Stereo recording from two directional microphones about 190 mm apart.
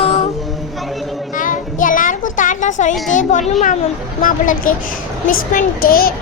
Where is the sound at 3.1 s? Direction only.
40° left (ahead or behind).